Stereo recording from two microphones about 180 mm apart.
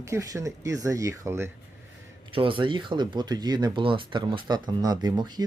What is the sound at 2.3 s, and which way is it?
Speech, 30° right (ahead or behind).